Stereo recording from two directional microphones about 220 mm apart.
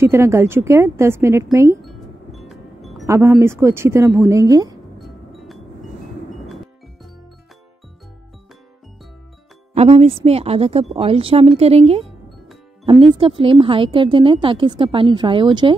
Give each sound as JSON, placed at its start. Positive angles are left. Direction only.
{"t": 0.0, "sound": "speech", "side_deg": -10}
{"t": 1.8, "sound": "music", "side_deg": 0}
{"t": 3.1, "sound": "speech", "side_deg": -15}
{"t": 5.0, "sound": "music", "side_deg": 0}
{"t": 9.8, "sound": "speech", "side_deg": -30}